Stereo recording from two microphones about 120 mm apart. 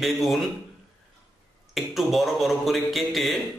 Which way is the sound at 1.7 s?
Centre (ahead or behind).